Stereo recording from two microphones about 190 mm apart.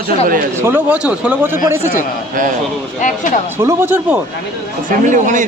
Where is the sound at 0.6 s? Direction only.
10° right (ahead or behind).